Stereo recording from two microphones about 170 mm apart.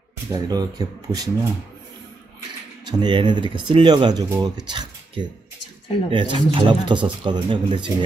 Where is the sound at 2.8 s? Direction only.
25° right (ahead or behind).